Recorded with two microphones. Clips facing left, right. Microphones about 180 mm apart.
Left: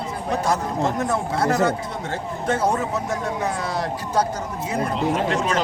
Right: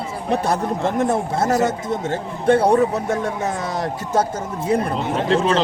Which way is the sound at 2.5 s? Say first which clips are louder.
Right 6 dB; 35° right (ahead or behind).